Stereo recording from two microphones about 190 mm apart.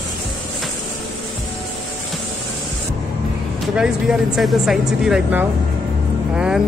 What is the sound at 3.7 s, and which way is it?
Speech, 5° right (ahead or behind).